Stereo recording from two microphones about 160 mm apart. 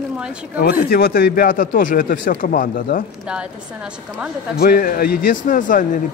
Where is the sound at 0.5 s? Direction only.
70° left (ahead or behind).